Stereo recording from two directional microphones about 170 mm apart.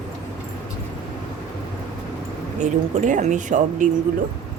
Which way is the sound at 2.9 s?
45° right (ahead or behind).